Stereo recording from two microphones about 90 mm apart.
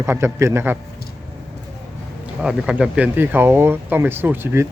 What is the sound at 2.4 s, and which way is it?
A man's voice, 10° right (ahead or behind).